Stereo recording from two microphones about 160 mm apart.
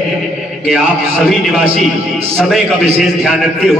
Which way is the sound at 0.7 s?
Centre (ahead or behind).